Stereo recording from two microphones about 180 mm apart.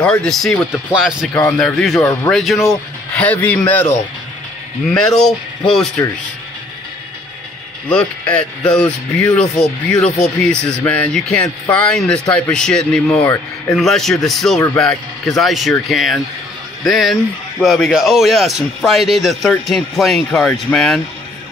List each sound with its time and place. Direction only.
0.0 s speech: 5° left (ahead or behind)
4.8 s speech: 5° left (ahead or behind)
7.9 s speech: 5° left (ahead or behind)
10.0 s speech: 40° left (ahead or behind)
10.5 s speech: 5° left (ahead or behind)
13.0 s speech: 15° left (ahead or behind)
13.7 s speech: centre (ahead or behind)